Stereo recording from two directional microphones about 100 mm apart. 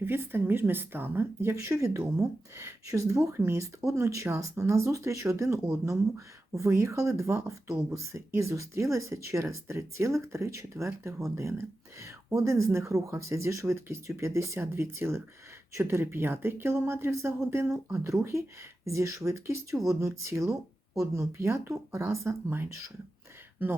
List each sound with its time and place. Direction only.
0.0 s speech: 20° right (ahead or behind)